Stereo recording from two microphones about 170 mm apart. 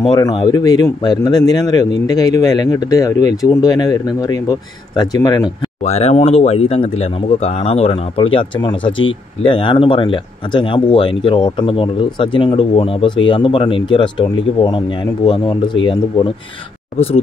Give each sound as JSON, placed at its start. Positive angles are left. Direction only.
{"t": 0.0, "sound": "a man's voice", "side_deg": 25}
{"t": 5.8, "sound": "speech", "side_deg": 40}